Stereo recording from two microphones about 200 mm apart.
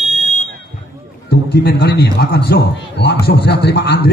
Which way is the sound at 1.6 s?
55° left (ahead or behind).